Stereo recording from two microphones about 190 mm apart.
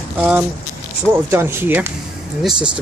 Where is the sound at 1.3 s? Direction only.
10° right (ahead or behind).